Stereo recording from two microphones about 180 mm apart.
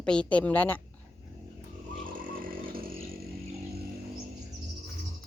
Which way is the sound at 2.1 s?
50° right (ahead or behind).